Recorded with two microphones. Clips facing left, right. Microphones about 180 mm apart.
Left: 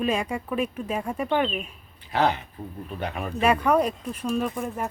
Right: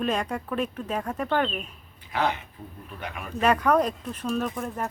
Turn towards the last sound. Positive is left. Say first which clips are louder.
# left 2 dB
turn(degrees=5)  # may be behind; listen again after turning